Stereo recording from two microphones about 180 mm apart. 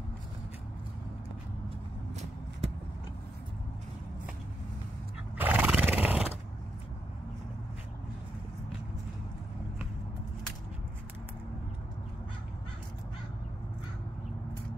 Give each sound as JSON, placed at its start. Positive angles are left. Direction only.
{"t": 2.6, "sound": "vehicle", "side_deg": -35}
{"t": 5.4, "sound": "neigh", "side_deg": -10}